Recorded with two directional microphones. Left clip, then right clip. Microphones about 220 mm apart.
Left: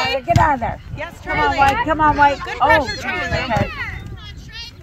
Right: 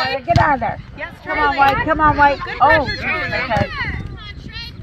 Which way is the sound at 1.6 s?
20° right (ahead or behind).